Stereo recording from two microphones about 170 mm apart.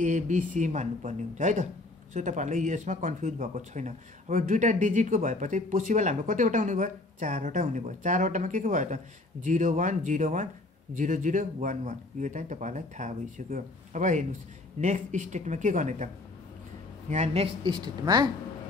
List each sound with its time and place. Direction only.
0.0 s speech: 45° right (ahead or behind)
17.1 s a woman's voice: 40° right (ahead or behind); by 18.3 s 25° right (ahead or behind)